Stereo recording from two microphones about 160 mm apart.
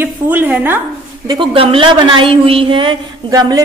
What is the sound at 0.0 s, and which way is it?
Speech, 10° right (ahead or behind).